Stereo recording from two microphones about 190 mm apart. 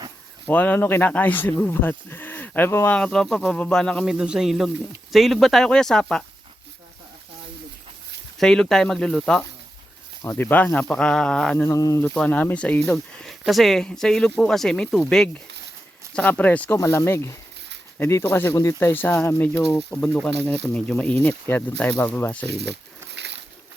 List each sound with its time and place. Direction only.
0.4 s speech: 10° left (ahead or behind)
8.4 s speech: 5° left (ahead or behind)
22.4 s speech: 60° right (ahead or behind)
23.1 s a sound: 65° right (ahead or behind)